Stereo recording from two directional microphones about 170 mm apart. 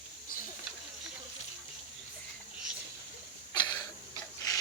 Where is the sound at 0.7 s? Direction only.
Centre (ahead or behind).